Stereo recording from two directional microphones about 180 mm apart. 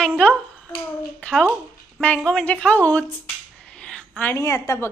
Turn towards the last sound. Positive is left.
turn(degrees=15)  # may be behind; listen again after turning